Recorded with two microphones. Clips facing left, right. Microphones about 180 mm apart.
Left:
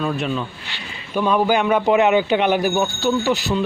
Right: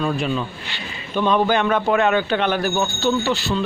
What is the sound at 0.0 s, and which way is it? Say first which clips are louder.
Speech: right 1 dB; centre (ahead or behind).